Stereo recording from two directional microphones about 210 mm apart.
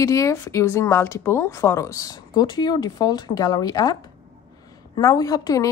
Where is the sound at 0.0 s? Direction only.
15° left (ahead or behind).